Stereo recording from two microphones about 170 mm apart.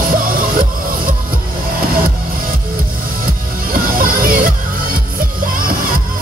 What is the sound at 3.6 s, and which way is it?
Music, 60° right (ahead or behind).